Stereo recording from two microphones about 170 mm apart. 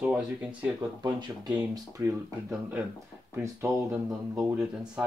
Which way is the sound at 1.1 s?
25° right (ahead or behind).